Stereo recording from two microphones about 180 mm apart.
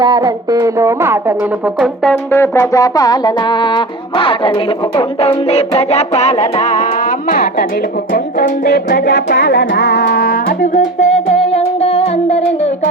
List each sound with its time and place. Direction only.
0.0 s music: 25° right (ahead or behind)
2.0 s music: 15° left (ahead or behind); by 6.8 s 40° left (ahead or behind)
8.1 s music: 60° left (ahead or behind); by 12.4 s 35° left (ahead or behind)